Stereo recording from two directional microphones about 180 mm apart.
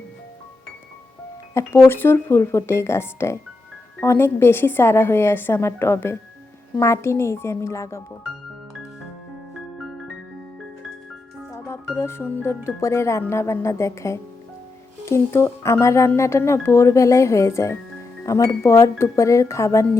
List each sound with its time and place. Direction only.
1.5 s speech: 15° left (ahead or behind)
11.9 s speech: 15° left (ahead or behind)